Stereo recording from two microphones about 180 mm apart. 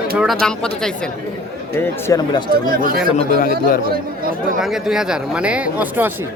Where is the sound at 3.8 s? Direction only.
55° right (ahead or behind).